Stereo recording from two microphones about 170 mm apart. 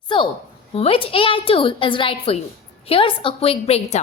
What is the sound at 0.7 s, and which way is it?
A woman's voice, 35° left (ahead or behind).